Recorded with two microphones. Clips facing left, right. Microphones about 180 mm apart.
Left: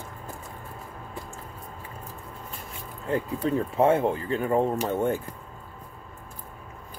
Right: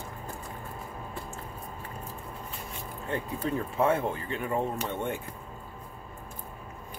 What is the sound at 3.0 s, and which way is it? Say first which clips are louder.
Speech: left 5 dB; 35° left (ahead or behind).